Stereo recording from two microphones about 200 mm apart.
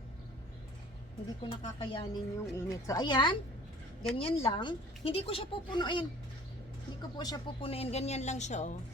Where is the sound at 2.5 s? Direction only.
20° left (ahead or behind).